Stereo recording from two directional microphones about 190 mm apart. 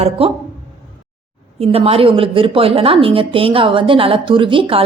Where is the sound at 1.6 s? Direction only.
30° right (ahead or behind).